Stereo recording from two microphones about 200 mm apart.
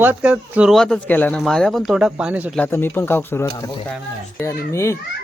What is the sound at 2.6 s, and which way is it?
Speech, 10° left (ahead or behind).